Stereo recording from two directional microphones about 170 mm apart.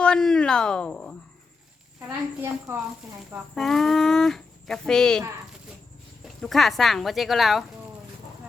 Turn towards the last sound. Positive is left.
turn(degrees=0)  # may be behind; listen again after turning